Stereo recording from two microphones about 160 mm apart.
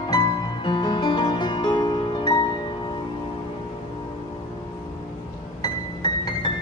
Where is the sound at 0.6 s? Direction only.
30° left (ahead or behind).